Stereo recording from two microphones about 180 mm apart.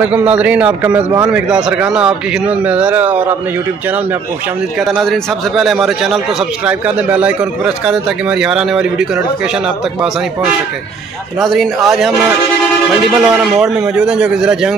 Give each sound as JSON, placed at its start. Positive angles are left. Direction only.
{"t": 0.0, "sound": "a man's voice", "side_deg": -10}
{"t": 4.8, "sound": "speech", "side_deg": 0}
{"t": 11.4, "sound": "speech", "side_deg": 0}
{"t": 13.2, "sound": "speech", "side_deg": -5}